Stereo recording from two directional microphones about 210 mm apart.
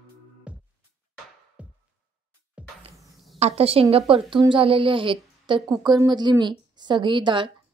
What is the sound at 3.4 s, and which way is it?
A woman's voice, 30° right (ahead or behind).